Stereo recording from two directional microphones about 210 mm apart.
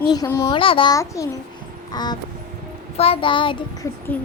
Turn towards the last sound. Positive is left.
turn(degrees=5)  # may be behind; listen again after turning